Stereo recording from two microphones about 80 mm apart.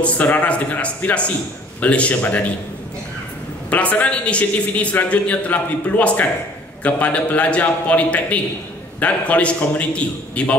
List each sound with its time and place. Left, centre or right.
0.0 s speech: centre
3.7 s speech: centre